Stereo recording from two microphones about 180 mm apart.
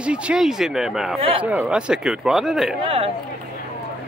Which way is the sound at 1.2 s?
30° right (ahead or behind).